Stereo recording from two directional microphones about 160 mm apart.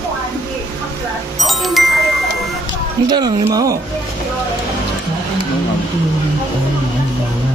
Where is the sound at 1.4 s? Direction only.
Centre (ahead or behind).